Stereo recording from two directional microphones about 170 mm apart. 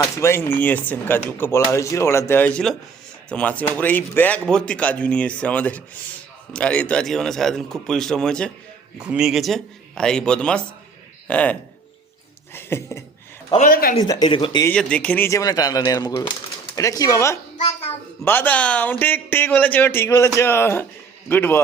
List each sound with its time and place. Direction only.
0.0 s a man's voice: 15° left (ahead or behind)
12.5 s speech: 15° left (ahead or behind)
13.6 s speech: 60° left (ahead or behind)
14.0 s speech: 25° left (ahead or behind)
14.6 s speech: 5° left (ahead or behind)